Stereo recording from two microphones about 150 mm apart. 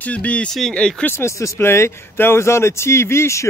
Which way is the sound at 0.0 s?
10° left (ahead or behind).